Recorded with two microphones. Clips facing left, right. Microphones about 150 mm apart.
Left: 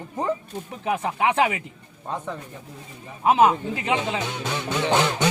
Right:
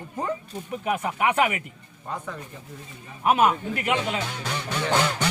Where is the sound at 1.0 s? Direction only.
25° left (ahead or behind).